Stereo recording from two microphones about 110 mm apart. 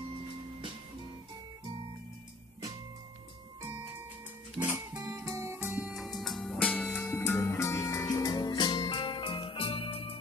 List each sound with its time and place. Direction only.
4.6 s music: 15° right (ahead or behind)
5.2 s music: 25° right (ahead or behind)
5.6 s music: 15° right (ahead or behind)
5.9 s music: centre (ahead or behind); by 10.1 s 60° left (ahead or behind)